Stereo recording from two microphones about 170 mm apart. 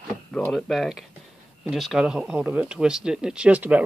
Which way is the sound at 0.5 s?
Centre (ahead or behind).